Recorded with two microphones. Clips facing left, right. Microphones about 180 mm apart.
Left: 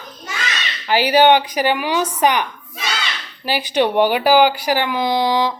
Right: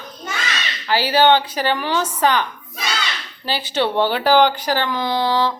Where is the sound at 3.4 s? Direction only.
15° left (ahead or behind).